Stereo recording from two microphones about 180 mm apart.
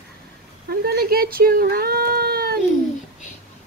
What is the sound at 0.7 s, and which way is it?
Speech, 60° right (ahead or behind).